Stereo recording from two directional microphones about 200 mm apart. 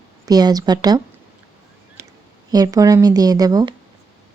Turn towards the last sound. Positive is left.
turn(degrees=-20)  # may be behind; listen again after turning